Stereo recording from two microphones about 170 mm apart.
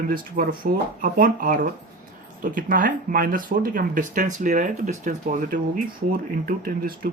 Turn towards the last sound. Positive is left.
turn(degrees=-55)  # may be behind; listen again after turning